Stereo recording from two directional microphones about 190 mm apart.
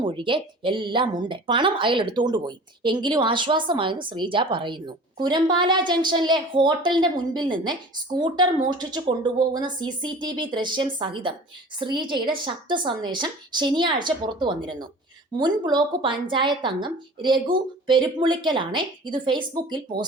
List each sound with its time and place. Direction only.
0.0 s speech: 25° right (ahead or behind)